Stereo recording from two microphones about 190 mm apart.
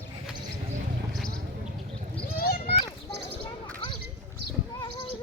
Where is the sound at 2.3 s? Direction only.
50° left (ahead or behind).